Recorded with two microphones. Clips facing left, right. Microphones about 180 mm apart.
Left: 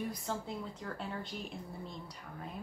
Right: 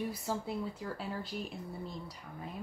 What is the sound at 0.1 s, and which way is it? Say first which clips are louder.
Speech: right 3 dB; 5° right (ahead or behind).